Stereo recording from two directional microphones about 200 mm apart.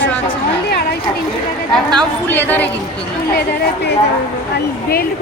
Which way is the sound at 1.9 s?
5° left (ahead or behind).